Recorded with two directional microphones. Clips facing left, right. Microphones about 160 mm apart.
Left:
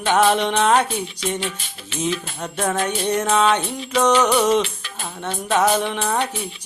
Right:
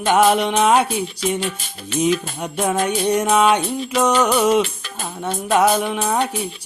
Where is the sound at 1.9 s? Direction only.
40° right (ahead or behind).